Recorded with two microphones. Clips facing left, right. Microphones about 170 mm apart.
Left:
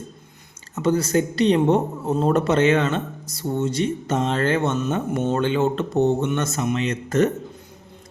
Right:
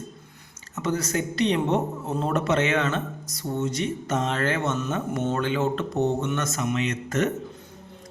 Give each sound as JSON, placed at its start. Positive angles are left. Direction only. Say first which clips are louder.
{"t": 0.8, "sound": "a woman's voice", "louder": "left 6 dB", "side_deg": 30}